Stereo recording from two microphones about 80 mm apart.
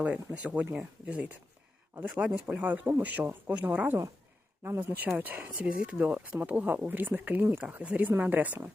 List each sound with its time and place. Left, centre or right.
0.0 s speech: centre
4.6 s speech: right